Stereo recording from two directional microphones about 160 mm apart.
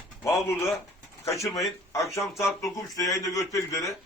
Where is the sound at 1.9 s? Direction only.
20° left (ahead or behind).